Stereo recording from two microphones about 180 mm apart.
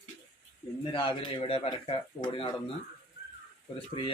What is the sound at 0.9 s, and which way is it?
Speech, 30° left (ahead or behind).